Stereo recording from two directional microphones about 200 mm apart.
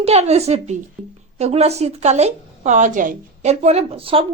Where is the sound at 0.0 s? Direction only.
30° right (ahead or behind).